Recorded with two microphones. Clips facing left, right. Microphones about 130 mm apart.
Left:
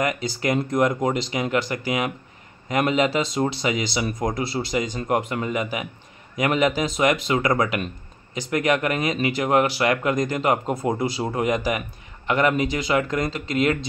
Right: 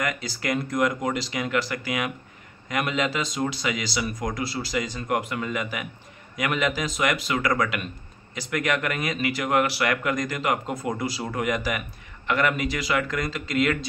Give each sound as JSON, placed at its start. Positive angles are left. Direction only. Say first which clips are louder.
{"t": 0.0, "sound": "speech", "louder": "left 5 dB", "side_deg": 25}